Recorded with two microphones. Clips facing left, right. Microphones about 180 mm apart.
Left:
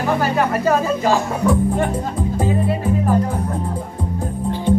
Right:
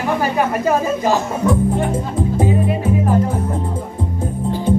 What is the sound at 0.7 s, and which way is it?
Speech, 20° right (ahead or behind).